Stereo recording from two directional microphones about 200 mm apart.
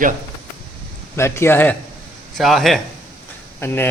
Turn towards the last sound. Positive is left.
turn(degrees=10)  # may be behind; listen again after turning